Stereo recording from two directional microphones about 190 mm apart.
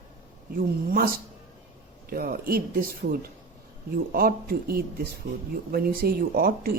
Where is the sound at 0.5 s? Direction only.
50° right (ahead or behind).